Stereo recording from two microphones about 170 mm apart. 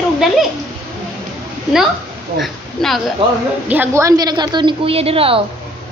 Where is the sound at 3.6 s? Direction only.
10° right (ahead or behind); by 5.4 s 35° right (ahead or behind).